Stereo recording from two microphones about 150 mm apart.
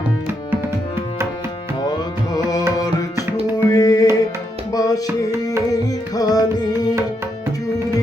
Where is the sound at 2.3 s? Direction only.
25° left (ahead or behind).